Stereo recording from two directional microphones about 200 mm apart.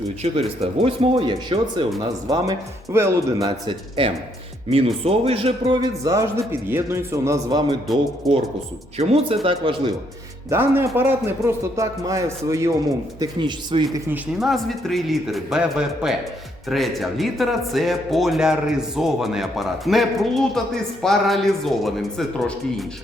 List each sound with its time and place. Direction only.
0.2 s a man's voice: 30° right (ahead or behind)
8.2 s speech: centre (ahead or behind)
9.0 s speech: 30° right (ahead or behind)
10.5 s a man's voice: 10° right (ahead or behind)
14.3 s speech: centre (ahead or behind)